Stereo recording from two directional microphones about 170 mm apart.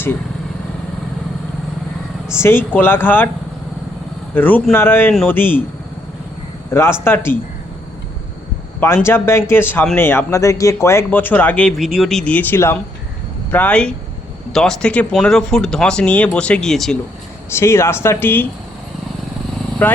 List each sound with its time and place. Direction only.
2.3 s speech: 15° left (ahead or behind)
4.4 s speech: 10° left (ahead or behind)
6.7 s speech: 15° left (ahead or behind)
9.0 s speech: 15° left (ahead or behind)
17.5 s speech: 15° left (ahead or behind)
19.8 s speech: 10° left (ahead or behind)